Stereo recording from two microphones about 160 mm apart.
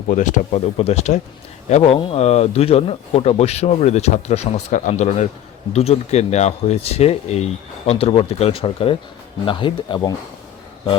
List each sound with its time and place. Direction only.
0.1 s speech: 50° left (ahead or behind); by 10.2 s 30° left (ahead or behind)